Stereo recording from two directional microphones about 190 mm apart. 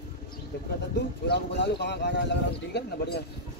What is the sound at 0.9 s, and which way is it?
Speech, 65° left (ahead or behind).